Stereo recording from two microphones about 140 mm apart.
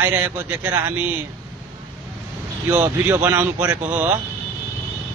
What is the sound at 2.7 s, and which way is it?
Speech, 15° right (ahead or behind).